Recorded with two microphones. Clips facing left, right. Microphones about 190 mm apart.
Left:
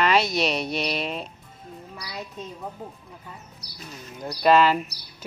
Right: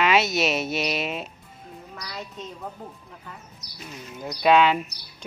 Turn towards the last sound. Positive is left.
turn(degrees=0)  # may be behind; listen again after turning